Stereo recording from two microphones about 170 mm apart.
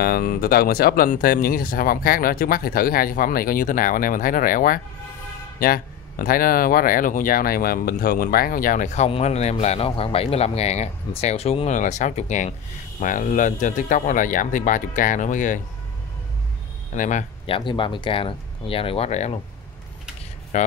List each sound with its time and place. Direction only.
0.0 s speech: 60° left (ahead or behind)
16.9 s speech: 50° left (ahead or behind)
17.5 s speech: 30° left (ahead or behind)
20.5 s speech: 45° left (ahead or behind)